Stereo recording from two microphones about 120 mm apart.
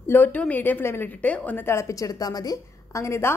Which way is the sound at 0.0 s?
15° left (ahead or behind).